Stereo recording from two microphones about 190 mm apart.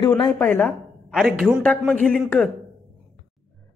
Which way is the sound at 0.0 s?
25° left (ahead or behind).